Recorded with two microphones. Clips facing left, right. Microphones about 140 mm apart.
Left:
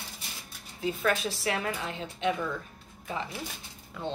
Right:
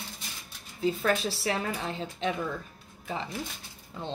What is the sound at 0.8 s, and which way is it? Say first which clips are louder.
A woman's voice: right 2 dB; 30° right (ahead or behind).